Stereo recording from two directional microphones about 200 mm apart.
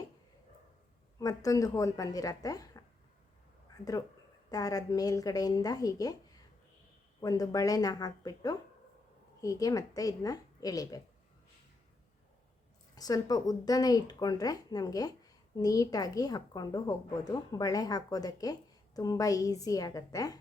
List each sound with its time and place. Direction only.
1.2 s speech: 15° left (ahead or behind)
4.4 s speech: 20° left (ahead or behind)
13.0 s speech: 20° left (ahead or behind)